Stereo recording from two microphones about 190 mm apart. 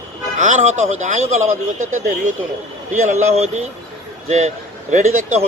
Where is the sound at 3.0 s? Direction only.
35° right (ahead or behind).